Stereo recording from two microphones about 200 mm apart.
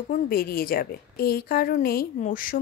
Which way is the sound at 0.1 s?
45° left (ahead or behind).